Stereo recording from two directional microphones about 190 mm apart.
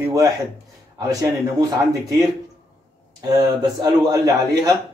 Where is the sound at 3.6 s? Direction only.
20° right (ahead or behind).